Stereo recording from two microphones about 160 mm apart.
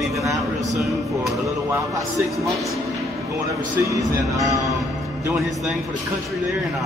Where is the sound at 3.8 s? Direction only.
20° right (ahead or behind).